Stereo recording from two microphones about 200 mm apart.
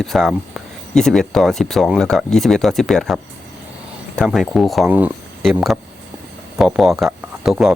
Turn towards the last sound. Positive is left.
turn(degrees=0)  # may be behind; listen again after turning